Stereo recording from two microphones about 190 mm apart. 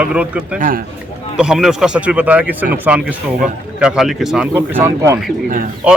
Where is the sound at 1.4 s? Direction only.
5° right (ahead or behind).